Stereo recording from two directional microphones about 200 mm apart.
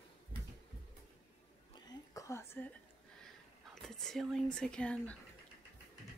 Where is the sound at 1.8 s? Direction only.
20° left (ahead or behind).